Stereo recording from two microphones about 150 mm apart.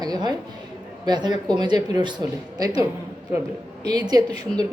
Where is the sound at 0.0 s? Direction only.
25° right (ahead or behind).